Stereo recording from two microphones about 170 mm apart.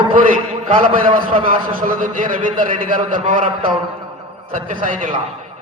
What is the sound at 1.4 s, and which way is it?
A man's voice, 55° right (ahead or behind).